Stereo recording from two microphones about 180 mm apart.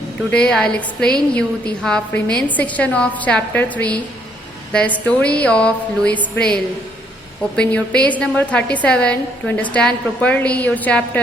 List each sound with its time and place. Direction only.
0.3 s a woman's voice: 5° left (ahead or behind)